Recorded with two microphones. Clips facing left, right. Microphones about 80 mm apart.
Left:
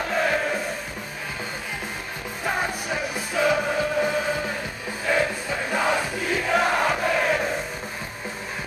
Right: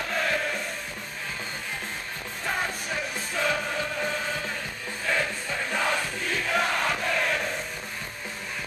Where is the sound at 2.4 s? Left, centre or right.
Centre.